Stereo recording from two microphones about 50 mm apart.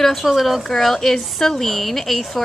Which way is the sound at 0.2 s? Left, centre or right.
Centre.